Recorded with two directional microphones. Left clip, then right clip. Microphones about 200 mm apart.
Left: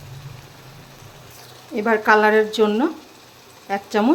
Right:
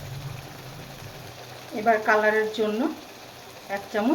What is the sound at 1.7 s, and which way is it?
Speech, 45° left (ahead or behind).